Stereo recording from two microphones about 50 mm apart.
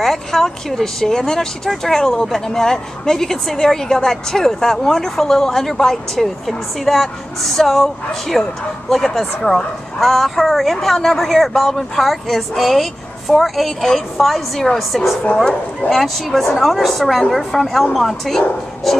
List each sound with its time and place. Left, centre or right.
0.0 s a woman's voice: centre
9.5 s speech: left
9.9 s speech: centre